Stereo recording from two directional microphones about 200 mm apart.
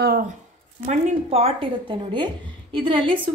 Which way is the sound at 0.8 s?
30° right (ahead or behind).